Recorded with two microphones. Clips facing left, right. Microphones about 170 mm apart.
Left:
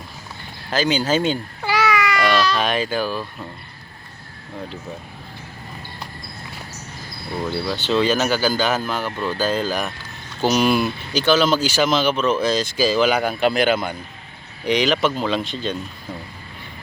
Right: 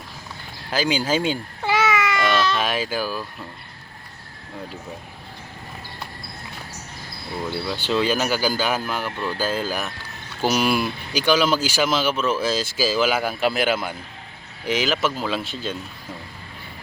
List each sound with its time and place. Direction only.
0.7 s speech: 10° right (ahead or behind)
1.6 s babbling: 25° right (ahead or behind)
2.6 s speech: 5° right (ahead or behind)
7.7 s speech: 10° right (ahead or behind)